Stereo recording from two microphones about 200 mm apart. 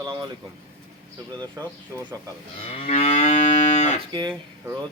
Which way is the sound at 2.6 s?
30° left (ahead or behind).